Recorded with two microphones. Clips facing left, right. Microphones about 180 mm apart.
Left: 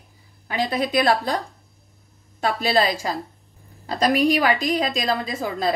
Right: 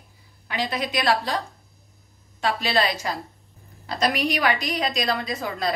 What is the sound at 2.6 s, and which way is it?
A woman's voice, 35° left (ahead or behind).